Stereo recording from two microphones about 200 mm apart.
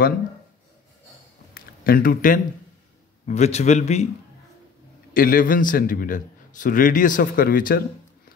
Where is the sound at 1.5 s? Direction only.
45° left (ahead or behind).